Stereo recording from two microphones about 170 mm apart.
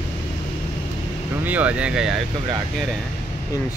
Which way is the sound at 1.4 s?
10° right (ahead or behind).